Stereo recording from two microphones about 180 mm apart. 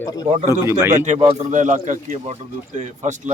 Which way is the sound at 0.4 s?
15° right (ahead or behind).